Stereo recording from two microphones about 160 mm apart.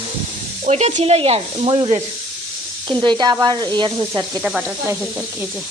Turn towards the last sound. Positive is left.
turn(degrees=-25)  # may be behind; listen again after turning